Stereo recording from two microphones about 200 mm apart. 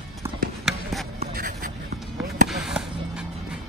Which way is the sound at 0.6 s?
Centre (ahead or behind).